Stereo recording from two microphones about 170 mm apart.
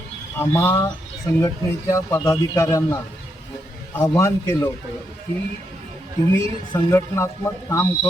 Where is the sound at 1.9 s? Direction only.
15° left (ahead or behind).